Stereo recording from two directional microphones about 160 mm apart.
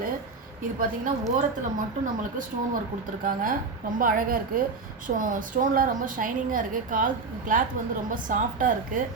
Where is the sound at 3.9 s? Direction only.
60° right (ahead or behind).